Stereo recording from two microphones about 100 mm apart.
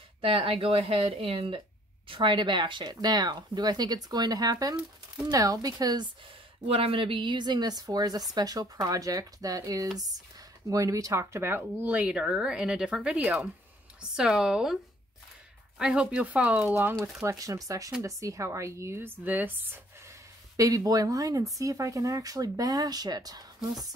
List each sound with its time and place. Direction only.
0.2 s speech: 65° right (ahead or behind)
2.0 s speech: 50° right (ahead or behind)
6.7 s speech: 70° right (ahead or behind); by 14.8 s 5° right (ahead or behind)
15.8 s speech: 10° right (ahead or behind)
17.0 s speech: 30° right (ahead or behind)
20.5 s speech: 35° right (ahead or behind)